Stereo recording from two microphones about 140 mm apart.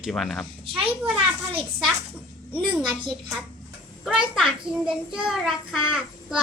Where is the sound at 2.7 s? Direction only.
Centre (ahead or behind).